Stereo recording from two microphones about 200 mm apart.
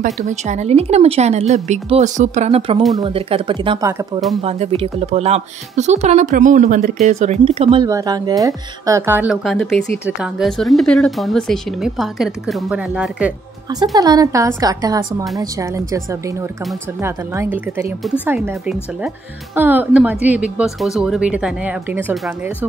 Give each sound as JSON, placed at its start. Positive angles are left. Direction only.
{"t": 0.0, "sound": "speech", "side_deg": -35}
{"t": 7.8, "sound": "a woman's voice", "side_deg": -20}
{"t": 13.9, "sound": "a woman's voice", "side_deg": -20}